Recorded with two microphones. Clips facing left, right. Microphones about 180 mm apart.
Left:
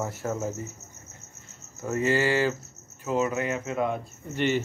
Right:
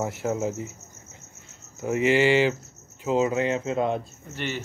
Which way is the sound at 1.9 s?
20° right (ahead or behind).